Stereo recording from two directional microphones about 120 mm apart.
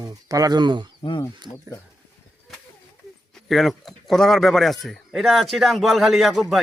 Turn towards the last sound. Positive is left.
turn(degrees=0)  # may be behind; listen again after turning